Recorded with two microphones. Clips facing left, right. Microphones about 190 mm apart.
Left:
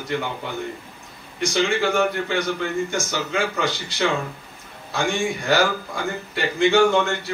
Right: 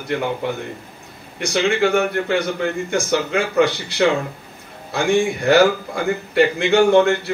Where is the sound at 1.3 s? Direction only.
60° right (ahead or behind).